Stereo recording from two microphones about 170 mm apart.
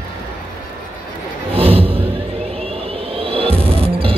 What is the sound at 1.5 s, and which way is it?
Music, 35° right (ahead or behind).